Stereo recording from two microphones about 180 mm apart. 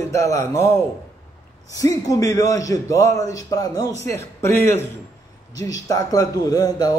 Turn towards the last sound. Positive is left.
turn(degrees=20)  # may be behind; listen again after turning